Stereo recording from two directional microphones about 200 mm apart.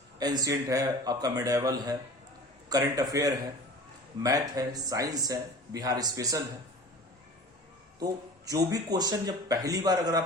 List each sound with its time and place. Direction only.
0.2 s speech: 20° right (ahead or behind)
7.9 s speech: 20° right (ahead or behind)